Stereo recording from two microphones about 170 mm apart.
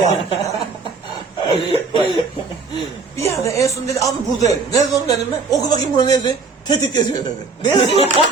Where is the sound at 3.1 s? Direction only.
15° left (ahead or behind).